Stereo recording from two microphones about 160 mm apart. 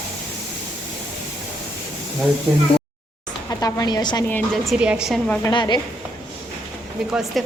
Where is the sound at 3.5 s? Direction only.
20° left (ahead or behind).